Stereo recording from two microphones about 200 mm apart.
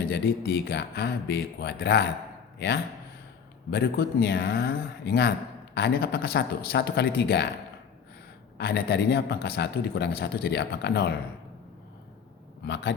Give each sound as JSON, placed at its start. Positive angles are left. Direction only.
{"t": 0.1, "sound": "speech", "side_deg": 55}
{"t": 8.5, "sound": "speech", "side_deg": 55}
{"t": 12.6, "sound": "speech", "side_deg": 55}